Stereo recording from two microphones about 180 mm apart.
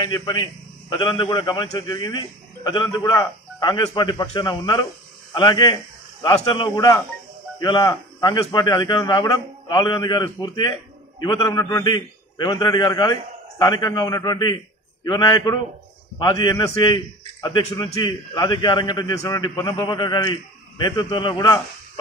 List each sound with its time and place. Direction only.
0.0 s a man's voice: 20° left (ahead or behind)